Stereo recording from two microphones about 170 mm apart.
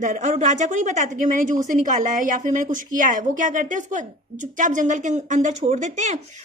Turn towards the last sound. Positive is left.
turn(degrees=-45)  # may be behind; listen again after turning